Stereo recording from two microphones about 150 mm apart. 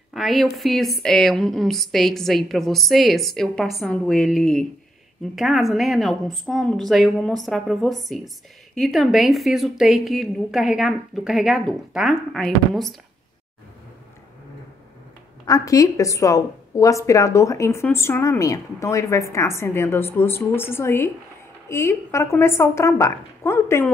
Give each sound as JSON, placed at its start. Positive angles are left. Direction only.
{"t": 0.1, "sound": "speech", "side_deg": 0}
{"t": 15.4, "sound": "a woman's voice", "side_deg": 20}